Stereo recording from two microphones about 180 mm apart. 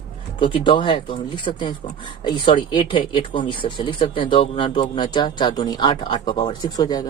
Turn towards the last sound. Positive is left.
turn(degrees=20)  # may be behind; listen again after turning